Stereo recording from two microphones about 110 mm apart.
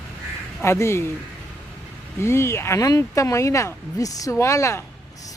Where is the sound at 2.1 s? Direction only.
25° left (ahead or behind).